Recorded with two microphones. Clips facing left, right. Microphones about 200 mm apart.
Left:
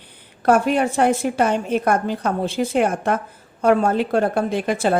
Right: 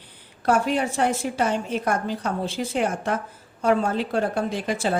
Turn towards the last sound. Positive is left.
turn(degrees=55)  # may be behind; listen again after turning